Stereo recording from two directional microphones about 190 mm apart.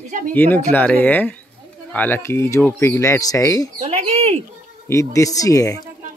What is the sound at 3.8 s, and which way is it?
Speech, 35° right (ahead or behind).